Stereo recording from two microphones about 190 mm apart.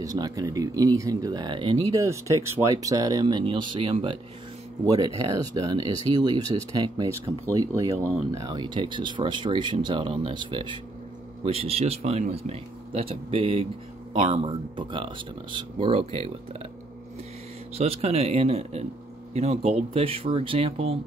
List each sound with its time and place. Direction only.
0.0 s speech: 20° right (ahead or behind)
17.7 s speech: 30° right (ahead or behind)